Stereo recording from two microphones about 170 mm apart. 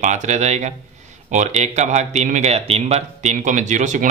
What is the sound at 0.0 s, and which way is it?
Speech, 45° right (ahead or behind).